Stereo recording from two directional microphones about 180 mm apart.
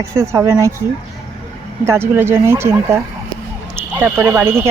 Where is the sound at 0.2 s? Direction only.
15° right (ahead or behind).